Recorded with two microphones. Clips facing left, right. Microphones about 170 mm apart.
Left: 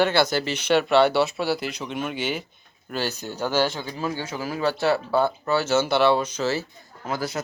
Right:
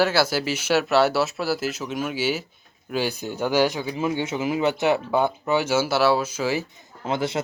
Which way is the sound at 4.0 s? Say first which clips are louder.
Right 4 dB; 20° right (ahead or behind).